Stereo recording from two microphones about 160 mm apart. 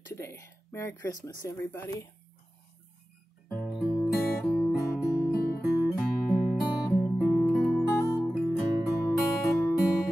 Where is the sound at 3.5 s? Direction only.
5° left (ahead or behind).